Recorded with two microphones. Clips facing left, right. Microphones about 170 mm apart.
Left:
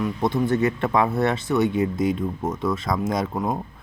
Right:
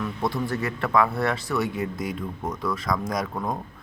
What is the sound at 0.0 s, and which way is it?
Speech, 20° left (ahead or behind).